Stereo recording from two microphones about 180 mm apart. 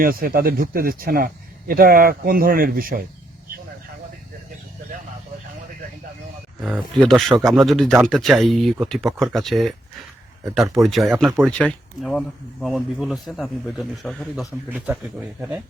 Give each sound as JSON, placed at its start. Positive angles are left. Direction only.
{"t": 0.0, "sound": "speech", "side_deg": -55}
{"t": 6.6, "sound": "speech", "side_deg": 0}